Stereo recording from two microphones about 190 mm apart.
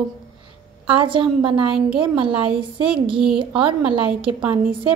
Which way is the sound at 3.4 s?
25° right (ahead or behind).